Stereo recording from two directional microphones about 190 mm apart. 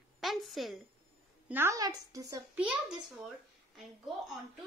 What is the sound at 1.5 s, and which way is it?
Speech, 15° right (ahead or behind).